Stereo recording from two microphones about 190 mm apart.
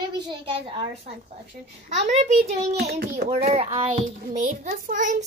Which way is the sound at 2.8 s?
55° right (ahead or behind).